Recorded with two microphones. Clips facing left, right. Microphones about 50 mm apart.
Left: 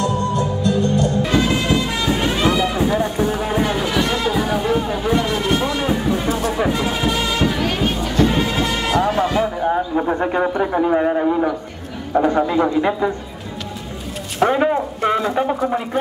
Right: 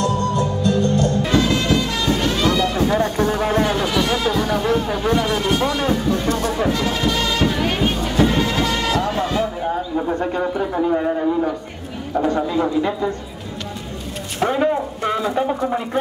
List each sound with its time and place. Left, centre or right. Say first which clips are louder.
0.0 s music: even; centre
1.5 s run: even; centre
2.9 s music: right 1 dB; centre
7.5 s music: even; centre
8.3 s music: even; centre
9.7 s a sound: left 3 dB; left
10.1 s bird: left 3 dB; left
10.6 s a sound: left 2 dB; left
14.4 s a sound: left 4 dB; centre
15.0 s speech: left 2 dB; centre